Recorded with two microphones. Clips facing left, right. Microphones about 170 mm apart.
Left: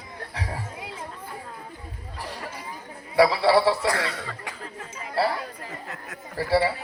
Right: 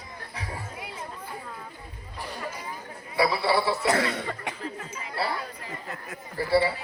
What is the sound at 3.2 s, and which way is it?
Speech, 85° left.